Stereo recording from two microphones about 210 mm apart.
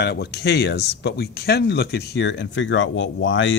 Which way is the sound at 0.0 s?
50° left (ahead or behind).